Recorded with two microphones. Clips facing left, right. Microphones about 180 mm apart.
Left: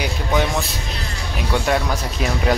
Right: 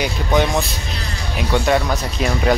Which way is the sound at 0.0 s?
5° left (ahead or behind).